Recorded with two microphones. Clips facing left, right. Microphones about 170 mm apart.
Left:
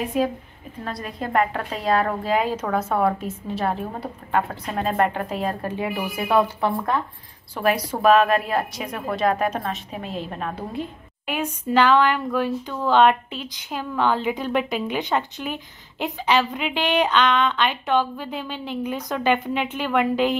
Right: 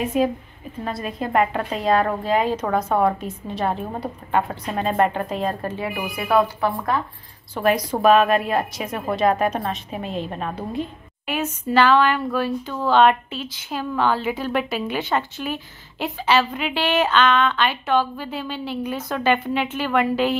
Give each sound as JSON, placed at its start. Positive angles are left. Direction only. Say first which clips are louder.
{"t": 0.0, "sound": "a woman's voice", "louder": "right 2 dB", "side_deg": 0}
{"t": 5.8, "sound": "speech", "louder": "left 1 dB", "side_deg": 20}
{"t": 7.6, "sound": "a woman's voice", "louder": "right 1 dB", "side_deg": 10}